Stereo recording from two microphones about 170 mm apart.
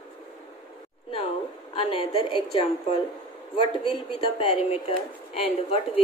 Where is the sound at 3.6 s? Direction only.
30° left (ahead or behind).